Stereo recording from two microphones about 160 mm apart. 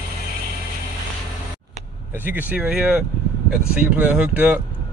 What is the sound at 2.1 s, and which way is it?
Speech, 10° right (ahead or behind).